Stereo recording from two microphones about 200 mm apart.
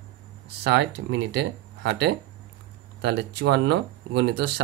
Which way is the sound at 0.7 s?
60° right (ahead or behind).